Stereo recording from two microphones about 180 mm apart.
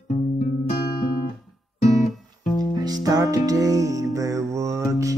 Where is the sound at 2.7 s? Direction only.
20° right (ahead or behind).